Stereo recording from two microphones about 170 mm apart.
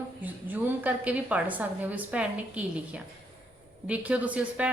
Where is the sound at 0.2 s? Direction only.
10° right (ahead or behind).